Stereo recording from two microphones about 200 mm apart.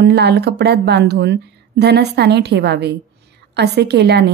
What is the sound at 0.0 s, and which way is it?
Speech, 55° right (ahead or behind).